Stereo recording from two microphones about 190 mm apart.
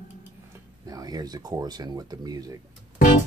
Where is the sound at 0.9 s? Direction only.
20° right (ahead or behind).